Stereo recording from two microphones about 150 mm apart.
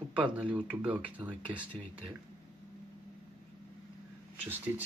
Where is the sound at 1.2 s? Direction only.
30° right (ahead or behind).